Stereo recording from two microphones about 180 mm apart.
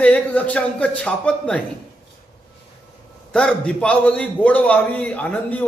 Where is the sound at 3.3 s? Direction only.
5° left (ahead or behind).